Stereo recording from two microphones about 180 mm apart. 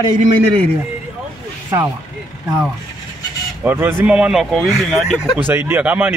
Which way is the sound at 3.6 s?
10° right (ahead or behind).